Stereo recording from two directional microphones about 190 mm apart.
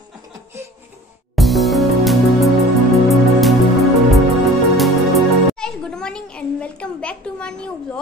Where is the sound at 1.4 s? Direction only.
Centre (ahead or behind).